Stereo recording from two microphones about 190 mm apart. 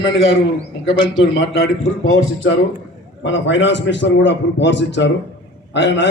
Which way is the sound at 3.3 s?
70° left (ahead or behind).